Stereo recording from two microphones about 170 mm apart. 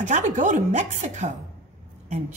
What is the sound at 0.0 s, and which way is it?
Speech, 45° right (ahead or behind).